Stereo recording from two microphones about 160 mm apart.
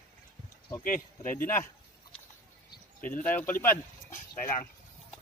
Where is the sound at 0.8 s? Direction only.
60° left (ahead or behind).